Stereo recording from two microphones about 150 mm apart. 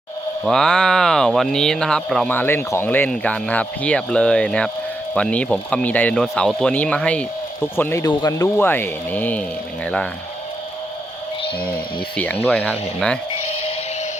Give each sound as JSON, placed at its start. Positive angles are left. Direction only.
{"t": 0.4, "sound": "speech", "side_deg": 5}
{"t": 2.3, "sound": "speech", "side_deg": 15}
{"t": 8.0, "sound": "speech", "side_deg": 25}
{"t": 8.5, "sound": "speech", "side_deg": 15}
{"t": 11.6, "sound": "speech", "side_deg": 10}
{"t": 13.4, "sound": "music", "side_deg": 40}